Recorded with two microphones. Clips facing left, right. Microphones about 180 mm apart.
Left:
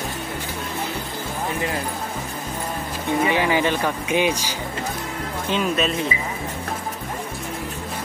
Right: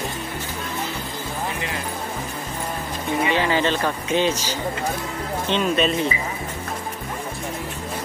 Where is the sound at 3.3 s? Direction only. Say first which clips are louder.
Right 1 dB; 15° left (ahead or behind).